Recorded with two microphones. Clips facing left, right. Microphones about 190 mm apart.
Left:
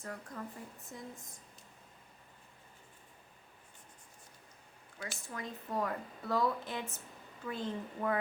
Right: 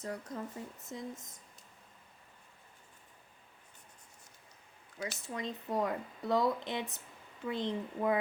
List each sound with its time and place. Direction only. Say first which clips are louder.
0.0 s speech: right 4 dB; 20° right (ahead or behind)
4.9 s a woman's voice: right 4 dB; 20° right (ahead or behind)